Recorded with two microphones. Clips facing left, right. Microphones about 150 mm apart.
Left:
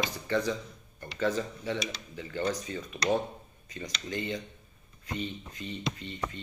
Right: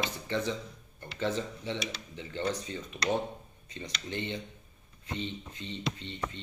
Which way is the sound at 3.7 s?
25° right (ahead or behind).